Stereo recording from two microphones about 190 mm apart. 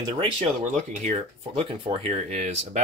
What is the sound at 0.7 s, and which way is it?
Speech, 35° right (ahead or behind).